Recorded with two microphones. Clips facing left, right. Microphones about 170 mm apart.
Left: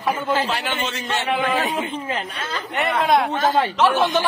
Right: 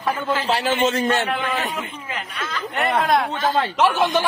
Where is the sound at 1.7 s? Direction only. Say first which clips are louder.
Left 5 dB; 30° left (ahead or behind).